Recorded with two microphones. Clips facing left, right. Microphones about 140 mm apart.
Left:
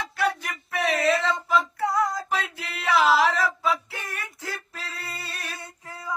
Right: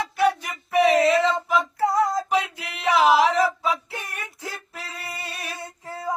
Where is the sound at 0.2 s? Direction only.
15° right (ahead or behind).